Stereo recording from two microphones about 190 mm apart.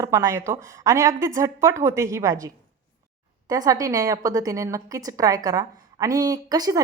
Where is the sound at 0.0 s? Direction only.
15° right (ahead or behind).